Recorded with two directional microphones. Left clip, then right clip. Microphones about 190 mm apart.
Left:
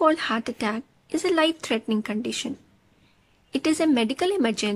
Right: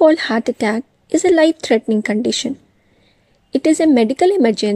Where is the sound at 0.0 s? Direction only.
25° right (ahead or behind).